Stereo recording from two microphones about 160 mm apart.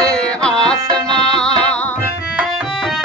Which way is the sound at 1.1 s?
40° left (ahead or behind).